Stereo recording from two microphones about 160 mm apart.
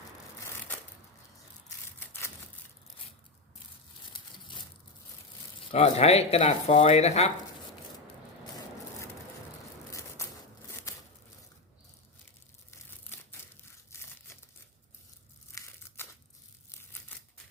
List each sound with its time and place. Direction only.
2.0 s a sound: 15° left (ahead or behind)
5.7 s speech: 45° left (ahead or behind)
9.9 s a sound: 15° left (ahead or behind)
13.9 s crumpling: 15° left (ahead or behind)
15.5 s crumpling: 20° left (ahead or behind)
16.0 s crushing: 15° left (ahead or behind)